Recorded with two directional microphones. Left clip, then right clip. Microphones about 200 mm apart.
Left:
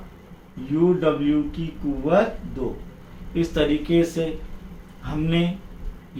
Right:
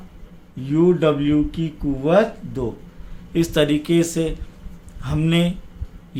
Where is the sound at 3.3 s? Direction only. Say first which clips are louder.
Right 3 dB; 55° right (ahead or behind).